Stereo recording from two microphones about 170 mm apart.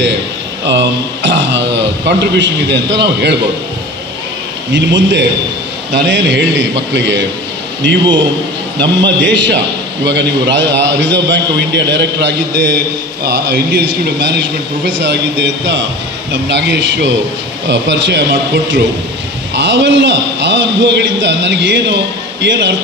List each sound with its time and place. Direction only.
0.7 s a man's voice: 90° right
4.7 s a man's voice: 90° right
9.0 s a man's voice: 90° right
13.2 s mantra: 75° right (ahead or behind)
14.9 s a man's voice: 90° right
19.5 s a man's voice: 90° right